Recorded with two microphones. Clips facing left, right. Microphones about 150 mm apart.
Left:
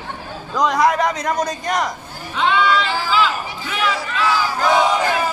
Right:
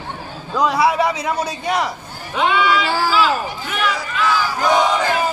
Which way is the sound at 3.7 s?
5° left (ahead or behind).